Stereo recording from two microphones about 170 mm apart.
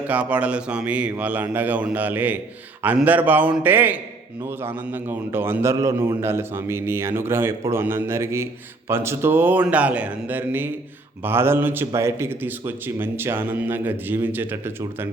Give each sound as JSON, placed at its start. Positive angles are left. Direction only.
{"t": 0.1, "sound": "speech", "side_deg": -10}